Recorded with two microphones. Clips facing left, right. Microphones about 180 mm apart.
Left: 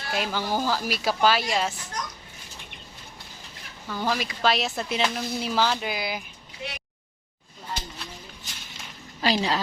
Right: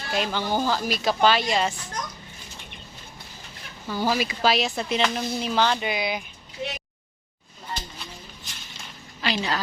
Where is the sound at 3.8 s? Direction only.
5° right (ahead or behind).